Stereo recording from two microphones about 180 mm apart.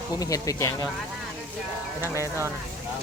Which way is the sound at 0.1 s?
20° left (ahead or behind).